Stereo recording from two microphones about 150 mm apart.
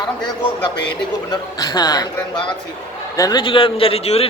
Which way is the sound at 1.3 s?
25° left (ahead or behind).